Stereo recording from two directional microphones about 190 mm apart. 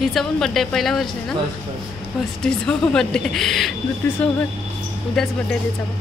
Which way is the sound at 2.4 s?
5° left (ahead or behind).